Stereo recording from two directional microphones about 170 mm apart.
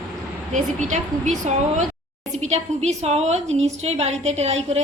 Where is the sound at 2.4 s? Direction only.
40° right (ahead or behind).